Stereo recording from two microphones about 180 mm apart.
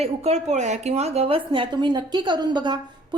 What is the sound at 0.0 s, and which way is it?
A woman's voice, 35° right (ahead or behind).